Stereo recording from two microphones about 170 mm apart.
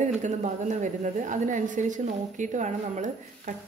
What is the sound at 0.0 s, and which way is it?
A woman's voice, 45° right (ahead or behind).